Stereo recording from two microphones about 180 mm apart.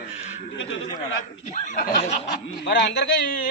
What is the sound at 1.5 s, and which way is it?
Speech, 40° left (ahead or behind).